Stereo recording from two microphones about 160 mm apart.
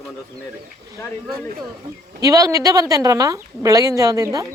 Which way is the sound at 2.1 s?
20° right (ahead or behind).